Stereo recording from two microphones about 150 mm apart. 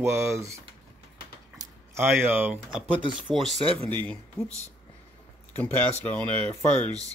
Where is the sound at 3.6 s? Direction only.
35° right (ahead or behind).